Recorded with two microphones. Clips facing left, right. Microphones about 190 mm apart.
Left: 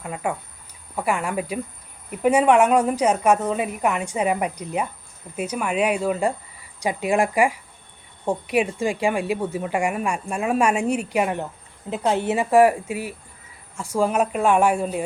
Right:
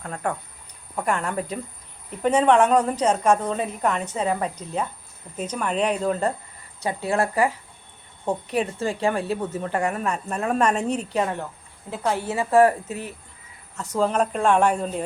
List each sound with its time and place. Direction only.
0.0 s a woman's voice: 10° left (ahead or behind)